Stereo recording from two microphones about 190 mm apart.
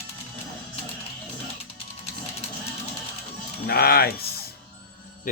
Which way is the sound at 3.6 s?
55° left (ahead or behind).